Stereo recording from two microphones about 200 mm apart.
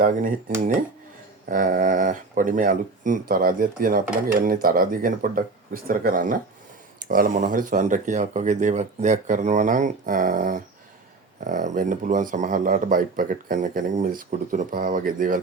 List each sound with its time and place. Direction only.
0.0 s speech: 40° right (ahead or behind)